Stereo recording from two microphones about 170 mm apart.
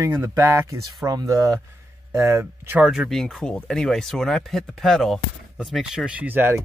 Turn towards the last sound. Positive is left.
turn(degrees=-10)  # may be behind; listen again after turning